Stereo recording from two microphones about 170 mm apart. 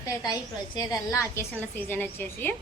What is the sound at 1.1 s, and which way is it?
A woman's voice, 15° left (ahead or behind).